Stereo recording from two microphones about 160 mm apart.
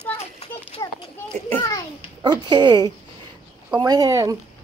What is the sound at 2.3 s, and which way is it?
Speech, 25° right (ahead or behind).